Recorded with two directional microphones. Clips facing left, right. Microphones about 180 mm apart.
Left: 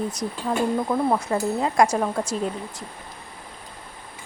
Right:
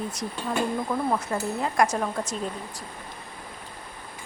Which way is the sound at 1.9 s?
10° left (ahead or behind).